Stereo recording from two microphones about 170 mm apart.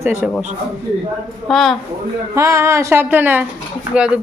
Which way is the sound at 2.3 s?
15° right (ahead or behind).